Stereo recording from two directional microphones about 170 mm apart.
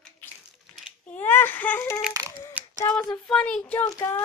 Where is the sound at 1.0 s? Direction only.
10° left (ahead or behind).